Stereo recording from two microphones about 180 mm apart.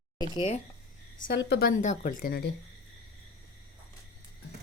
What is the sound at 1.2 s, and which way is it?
A woman's voice, 60° left (ahead or behind).